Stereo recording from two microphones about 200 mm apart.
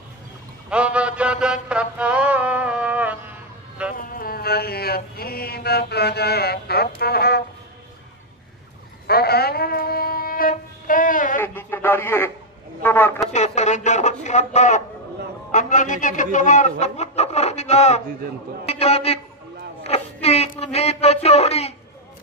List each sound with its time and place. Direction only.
0.7 s mantra: 5° right (ahead or behind)
3.9 s mantra: 45° left (ahead or behind)
7.0 s speech: 50° left (ahead or behind)
9.0 s a sound: 50° left (ahead or behind)
11.3 s radio: 10° left (ahead or behind)
12.8 s a man's voice: 10° left (ahead or behind)
13.3 s a man's voice: 35° left (ahead or behind)